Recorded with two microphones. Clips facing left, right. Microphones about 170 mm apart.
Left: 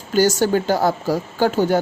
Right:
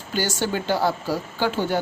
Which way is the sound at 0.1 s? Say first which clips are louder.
Left 8 dB; 40° left (ahead or behind).